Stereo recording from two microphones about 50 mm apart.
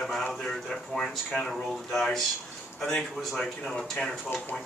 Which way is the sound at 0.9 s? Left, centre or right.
Centre.